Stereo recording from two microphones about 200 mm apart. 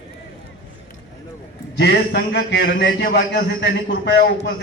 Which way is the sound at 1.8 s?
60° left (ahead or behind).